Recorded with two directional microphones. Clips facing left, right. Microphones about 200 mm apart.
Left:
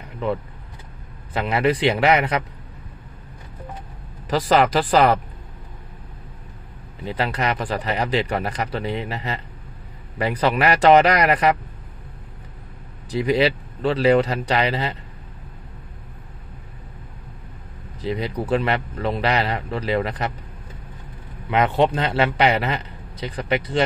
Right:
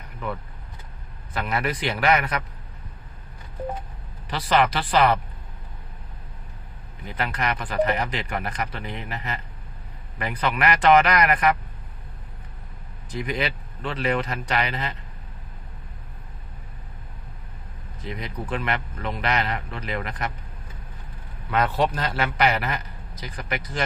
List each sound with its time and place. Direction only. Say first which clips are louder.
1.3 s a man's voice: left 7 dB; 25° left (ahead or behind)
4.3 s speech: left 4 dB; 40° left (ahead or behind)
7.1 s speech: left 4 dB; 35° left (ahead or behind)
13.1 s speech: left 9 dB; 30° left (ahead or behind)
18.0 s speech: left 8 dB; 30° left (ahead or behind)
21.5 s a man's voice: left 4 dB; 20° left (ahead or behind)